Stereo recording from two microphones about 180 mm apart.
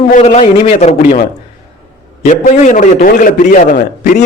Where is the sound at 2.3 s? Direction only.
40° left (ahead or behind).